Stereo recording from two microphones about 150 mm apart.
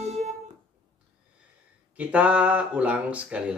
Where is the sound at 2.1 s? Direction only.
10° right (ahead or behind).